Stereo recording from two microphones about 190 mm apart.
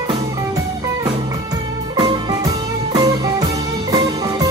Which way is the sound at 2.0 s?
20° right (ahead or behind).